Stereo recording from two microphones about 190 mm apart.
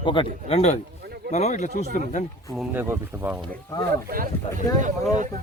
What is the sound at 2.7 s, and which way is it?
Speech, 10° right (ahead or behind).